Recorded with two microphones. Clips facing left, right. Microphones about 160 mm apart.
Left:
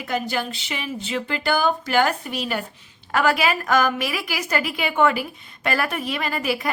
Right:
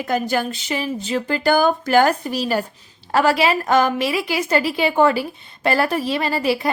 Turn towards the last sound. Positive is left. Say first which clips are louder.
# right 5 dB
turn(degrees=-30)  # may be behind; listen again after turning